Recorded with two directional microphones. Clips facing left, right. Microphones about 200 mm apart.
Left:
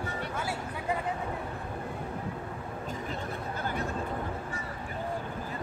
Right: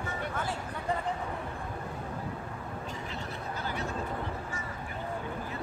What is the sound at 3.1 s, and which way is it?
Chatter, 50° left (ahead or behind).